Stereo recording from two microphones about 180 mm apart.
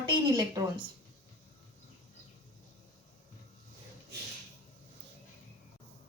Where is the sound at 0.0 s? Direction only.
20° right (ahead or behind).